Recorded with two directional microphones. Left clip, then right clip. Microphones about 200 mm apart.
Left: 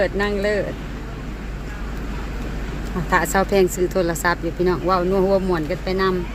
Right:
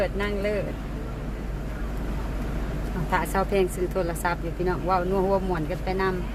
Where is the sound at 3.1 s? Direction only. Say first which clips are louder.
Left 7 dB; 40° left (ahead or behind).